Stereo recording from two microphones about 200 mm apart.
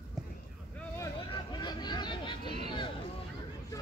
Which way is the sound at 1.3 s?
20° left (ahead or behind).